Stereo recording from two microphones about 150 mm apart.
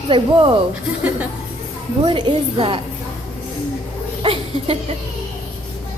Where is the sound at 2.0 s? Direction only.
35° right (ahead or behind).